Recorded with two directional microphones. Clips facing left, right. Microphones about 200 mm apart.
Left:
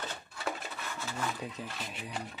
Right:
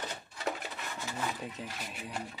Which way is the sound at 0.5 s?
15° right (ahead or behind).